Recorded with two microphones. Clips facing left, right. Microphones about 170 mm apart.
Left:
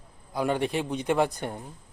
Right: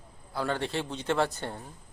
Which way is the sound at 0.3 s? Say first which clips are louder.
Left 4 dB; 15° left (ahead or behind).